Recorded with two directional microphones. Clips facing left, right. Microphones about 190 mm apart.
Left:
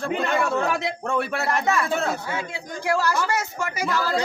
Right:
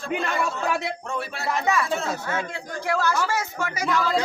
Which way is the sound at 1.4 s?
Centre (ahead or behind).